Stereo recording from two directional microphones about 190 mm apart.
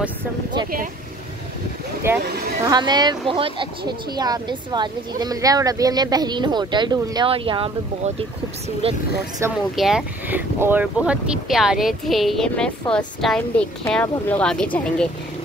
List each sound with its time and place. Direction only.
2.1 s speech: 10° right (ahead or behind); by 9.0 s 30° right (ahead or behind)
9.4 s speech: 15° right (ahead or behind)
9.8 s speech: 5° right (ahead or behind)